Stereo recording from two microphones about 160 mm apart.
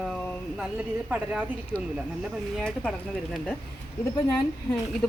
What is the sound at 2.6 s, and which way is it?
Speech, 5° left (ahead or behind).